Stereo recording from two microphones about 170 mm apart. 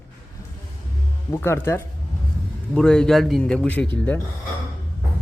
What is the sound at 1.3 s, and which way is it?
Speech, 15° left (ahead or behind).